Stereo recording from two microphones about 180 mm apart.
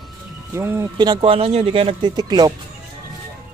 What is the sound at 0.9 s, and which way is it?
Speech, 25° right (ahead or behind).